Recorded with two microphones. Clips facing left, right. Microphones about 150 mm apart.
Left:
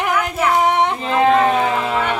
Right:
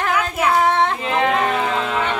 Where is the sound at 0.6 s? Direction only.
15° left (ahead or behind).